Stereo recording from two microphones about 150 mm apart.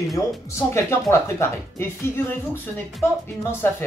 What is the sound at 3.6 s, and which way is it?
Speech, 15° left (ahead or behind).